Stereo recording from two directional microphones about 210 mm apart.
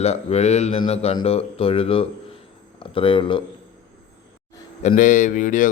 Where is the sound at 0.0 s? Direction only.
30° left (ahead or behind).